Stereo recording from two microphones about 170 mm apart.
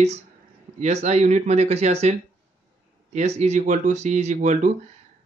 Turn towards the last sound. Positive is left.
turn(degrees=-45)  # may be behind; listen again after turning